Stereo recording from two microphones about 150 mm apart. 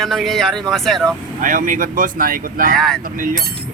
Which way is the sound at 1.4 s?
65° right (ahead or behind).